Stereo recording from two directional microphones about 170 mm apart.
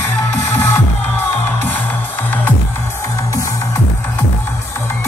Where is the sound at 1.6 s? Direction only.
10° left (ahead or behind).